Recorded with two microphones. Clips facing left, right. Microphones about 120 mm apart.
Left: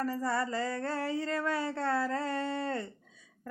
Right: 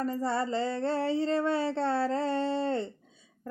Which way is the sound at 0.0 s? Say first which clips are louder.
Right 2 dB; 25° right (ahead or behind).